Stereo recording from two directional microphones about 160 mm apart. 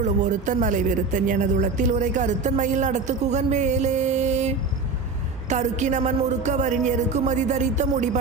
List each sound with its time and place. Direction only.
0.0 s a man's voice: 50° right (ahead or behind)